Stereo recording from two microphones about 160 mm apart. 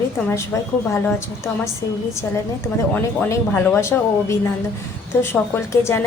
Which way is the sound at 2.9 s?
10° left (ahead or behind).